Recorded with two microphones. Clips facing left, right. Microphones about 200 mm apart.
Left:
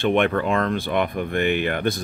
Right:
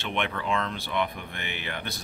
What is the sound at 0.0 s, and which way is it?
Speech, 50° left (ahead or behind).